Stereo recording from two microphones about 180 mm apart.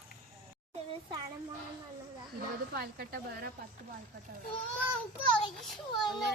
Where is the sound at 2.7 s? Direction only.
60° right (ahead or behind).